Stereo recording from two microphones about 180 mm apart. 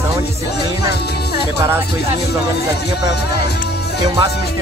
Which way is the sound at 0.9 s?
65° left (ahead or behind).